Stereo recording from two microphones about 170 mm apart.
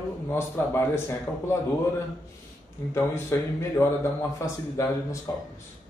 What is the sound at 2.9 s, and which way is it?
A man's voice, 15° left (ahead or behind).